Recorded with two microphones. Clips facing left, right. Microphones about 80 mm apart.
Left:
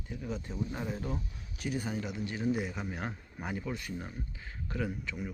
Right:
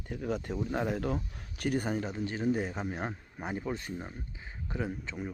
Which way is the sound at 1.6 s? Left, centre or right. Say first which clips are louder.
Right 4 dB; right.